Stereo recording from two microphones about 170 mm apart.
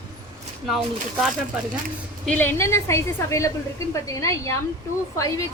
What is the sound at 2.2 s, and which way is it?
A woman's voice, 10° left (ahead or behind).